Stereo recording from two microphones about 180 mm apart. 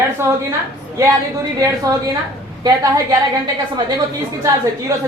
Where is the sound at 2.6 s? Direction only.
20° right (ahead or behind).